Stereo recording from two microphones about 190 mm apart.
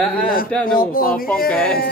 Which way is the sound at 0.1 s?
50° left (ahead or behind).